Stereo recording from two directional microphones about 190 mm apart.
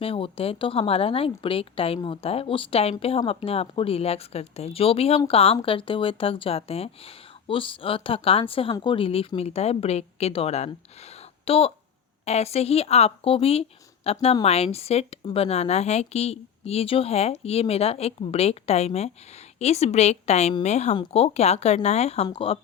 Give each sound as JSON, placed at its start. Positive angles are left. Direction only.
{"t": 0.0, "sound": "a woman's voice", "side_deg": 30}
{"t": 11.0, "sound": "a sound", "side_deg": 35}
{"t": 12.2, "sound": "a woman's voice", "side_deg": 35}